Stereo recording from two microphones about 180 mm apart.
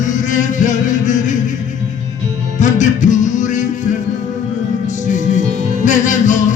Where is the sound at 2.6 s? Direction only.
45° left (ahead or behind).